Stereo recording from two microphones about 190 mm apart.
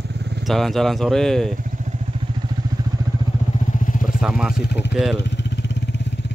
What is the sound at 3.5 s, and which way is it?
Vehicle, 45° left (ahead or behind).